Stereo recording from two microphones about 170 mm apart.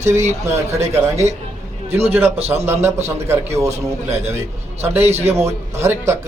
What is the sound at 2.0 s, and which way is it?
A man's voice, 10° right (ahead or behind).